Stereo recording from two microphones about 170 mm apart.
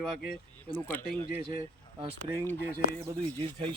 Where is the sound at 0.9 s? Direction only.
10° left (ahead or behind).